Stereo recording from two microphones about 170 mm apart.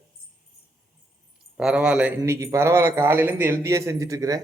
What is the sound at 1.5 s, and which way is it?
A man's voice, 5° right (ahead or behind).